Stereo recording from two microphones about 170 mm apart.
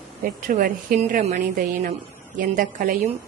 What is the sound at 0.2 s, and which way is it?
A woman's voice, 55° right (ahead or behind).